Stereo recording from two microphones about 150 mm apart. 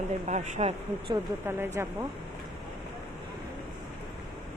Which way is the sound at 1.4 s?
15° right (ahead or behind).